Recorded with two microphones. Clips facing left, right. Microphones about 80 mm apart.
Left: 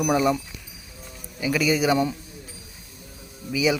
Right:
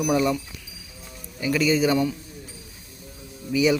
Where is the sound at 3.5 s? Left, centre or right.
Centre.